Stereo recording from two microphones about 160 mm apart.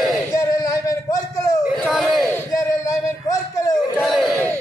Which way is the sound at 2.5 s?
20° left (ahead or behind).